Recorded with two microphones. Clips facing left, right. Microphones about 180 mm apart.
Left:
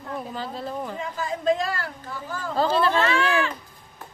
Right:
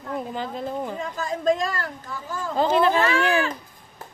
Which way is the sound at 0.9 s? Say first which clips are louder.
Right 1 dB; 45° right (ahead or behind).